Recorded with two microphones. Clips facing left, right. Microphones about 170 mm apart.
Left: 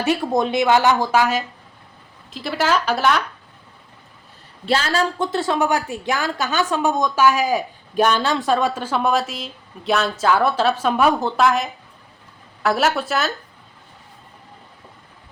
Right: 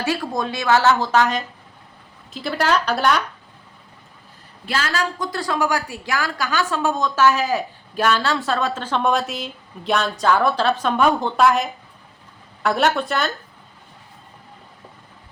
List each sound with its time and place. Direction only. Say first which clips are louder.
0.0 s a woman's voice: left 4 dB; 20° left (ahead or behind); by 3.2 s centre (ahead or behind)
4.6 s a woman's voice: left 4 dB; 25° left (ahead or behind); by 13.3 s 5° left (ahead or behind)